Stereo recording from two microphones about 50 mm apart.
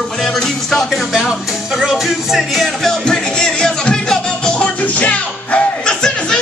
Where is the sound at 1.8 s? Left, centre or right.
Centre.